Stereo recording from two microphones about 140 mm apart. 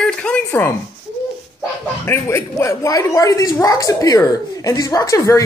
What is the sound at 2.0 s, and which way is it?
Speech, 20° left (ahead or behind).